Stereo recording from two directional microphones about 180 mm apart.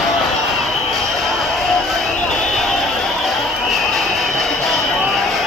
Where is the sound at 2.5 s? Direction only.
Centre (ahead or behind).